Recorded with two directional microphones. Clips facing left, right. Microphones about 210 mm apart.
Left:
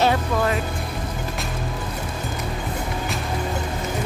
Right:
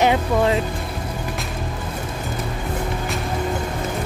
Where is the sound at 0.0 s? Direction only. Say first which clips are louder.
Right 3 dB; 20° right (ahead or behind).